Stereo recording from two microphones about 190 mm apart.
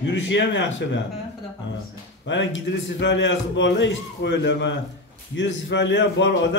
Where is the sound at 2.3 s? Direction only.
75° left (ahead or behind).